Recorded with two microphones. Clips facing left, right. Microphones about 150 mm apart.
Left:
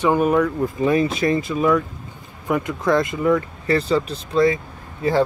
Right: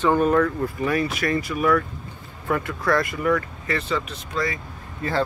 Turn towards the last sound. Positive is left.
turn(degrees=15)  # may be behind; listen again after turning